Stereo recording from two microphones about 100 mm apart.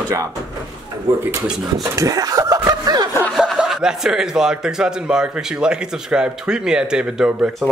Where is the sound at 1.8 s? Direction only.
35° right (ahead or behind).